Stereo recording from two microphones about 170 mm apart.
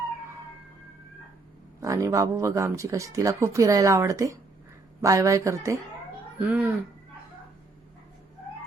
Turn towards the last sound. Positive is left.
turn(degrees=-10)  # may be behind; listen again after turning